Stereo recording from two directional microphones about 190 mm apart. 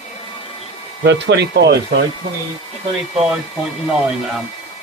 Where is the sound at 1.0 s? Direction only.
65° right (ahead or behind).